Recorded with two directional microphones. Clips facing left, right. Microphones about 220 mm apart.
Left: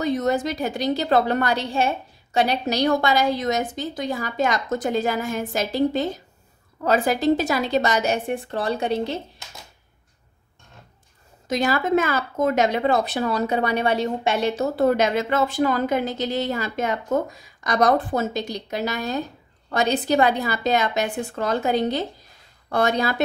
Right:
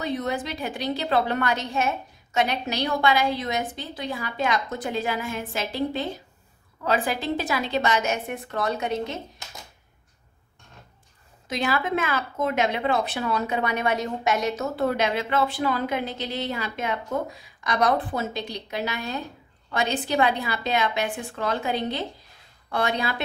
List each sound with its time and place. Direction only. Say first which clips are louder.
0.0 s a woman's voice: left 6 dB; 45° left (ahead or behind)
11.4 s a woman's voice: left 4 dB; 45° left (ahead or behind)